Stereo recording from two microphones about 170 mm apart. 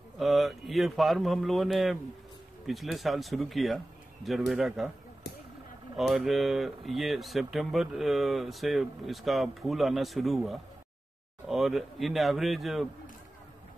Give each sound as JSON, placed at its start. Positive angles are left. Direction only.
{"t": 0.2, "sound": "speech", "side_deg": 0}
{"t": 5.9, "sound": "speech", "side_deg": 0}